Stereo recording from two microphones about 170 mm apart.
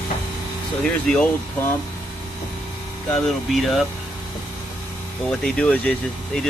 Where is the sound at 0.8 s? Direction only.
5° left (ahead or behind).